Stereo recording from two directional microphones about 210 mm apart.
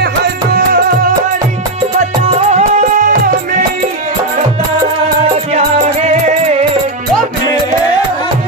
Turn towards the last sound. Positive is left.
turn(degrees=-35)  # may be behind; listen again after turning